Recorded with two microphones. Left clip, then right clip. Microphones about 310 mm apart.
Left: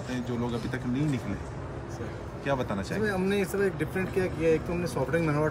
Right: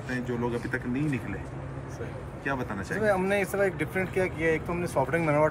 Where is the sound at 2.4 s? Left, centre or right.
Centre.